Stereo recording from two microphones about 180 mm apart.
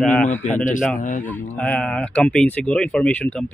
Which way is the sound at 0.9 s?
45° left (ahead or behind).